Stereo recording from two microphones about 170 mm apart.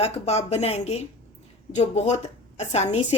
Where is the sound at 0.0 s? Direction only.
40° left (ahead or behind).